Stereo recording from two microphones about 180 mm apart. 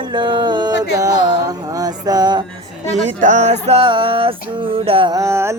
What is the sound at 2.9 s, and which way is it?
Male singing, 40° right (ahead or behind).